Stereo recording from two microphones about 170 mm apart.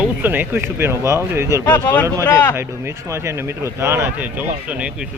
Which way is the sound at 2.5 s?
15° right (ahead or behind).